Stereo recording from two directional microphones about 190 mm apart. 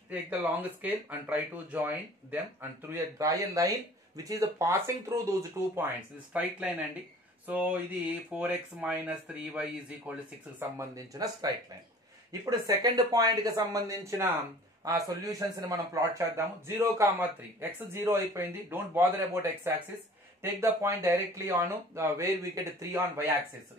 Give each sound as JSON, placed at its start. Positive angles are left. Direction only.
{"t": 0.1, "sound": "a man's voice", "side_deg": -10}
{"t": 10.8, "sound": "a man's voice", "side_deg": -20}
{"t": 20.6, "sound": "a man's voice", "side_deg": -15}